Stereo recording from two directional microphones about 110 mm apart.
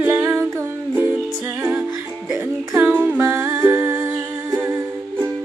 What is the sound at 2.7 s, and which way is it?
Humming, 15° right (ahead or behind).